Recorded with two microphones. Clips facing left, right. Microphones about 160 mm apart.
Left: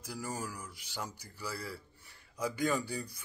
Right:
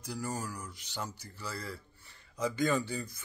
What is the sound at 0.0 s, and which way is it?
Speech, 10° left (ahead or behind).